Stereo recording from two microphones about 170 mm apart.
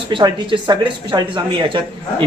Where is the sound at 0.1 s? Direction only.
30° right (ahead or behind).